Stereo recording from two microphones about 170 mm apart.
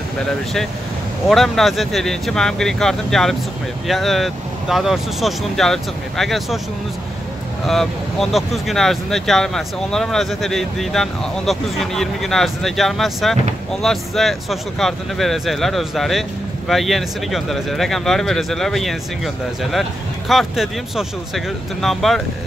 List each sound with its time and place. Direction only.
1.2 s speech: centre (ahead or behind)
7.6 s speech: centre (ahead or behind)